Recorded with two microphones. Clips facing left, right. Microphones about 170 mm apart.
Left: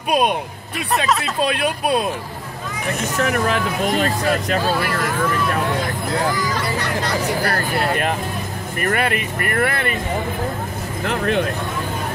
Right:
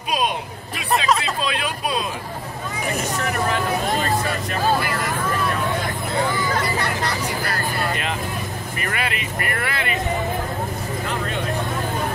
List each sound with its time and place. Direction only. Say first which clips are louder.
0.7 s speech: even; centre (ahead or behind)
1.4 s speech: left 5 dB; 55° left (ahead or behind)
3.2 s speech: left 6 dB; 65° left (ahead or behind)
7.1 s vehicle: left 5 dB; 55° left (ahead or behind)
8.8 s speech: left 7 dB; 50° left (ahead or behind)